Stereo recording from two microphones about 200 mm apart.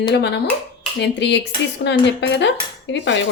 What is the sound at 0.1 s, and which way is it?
A woman's voice, 60° left (ahead or behind).